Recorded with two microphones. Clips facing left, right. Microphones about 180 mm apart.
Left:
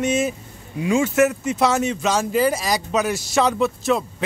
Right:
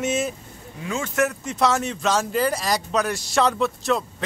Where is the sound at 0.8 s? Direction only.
15° left (ahead or behind).